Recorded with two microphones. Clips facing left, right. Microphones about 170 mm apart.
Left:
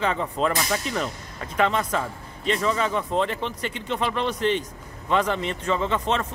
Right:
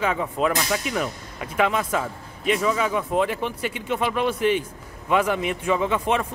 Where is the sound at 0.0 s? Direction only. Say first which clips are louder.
Right 1 dB; 5° right (ahead or behind).